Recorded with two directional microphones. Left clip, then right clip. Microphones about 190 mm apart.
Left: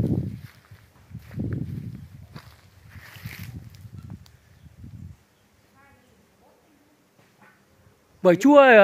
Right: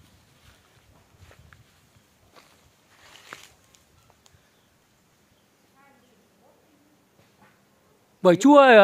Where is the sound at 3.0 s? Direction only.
Centre (ahead or behind).